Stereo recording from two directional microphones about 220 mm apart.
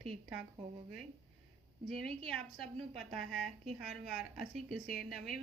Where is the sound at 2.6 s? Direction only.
25° right (ahead or behind).